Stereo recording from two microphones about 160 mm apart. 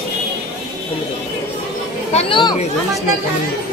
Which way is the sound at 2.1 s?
30° left (ahead or behind).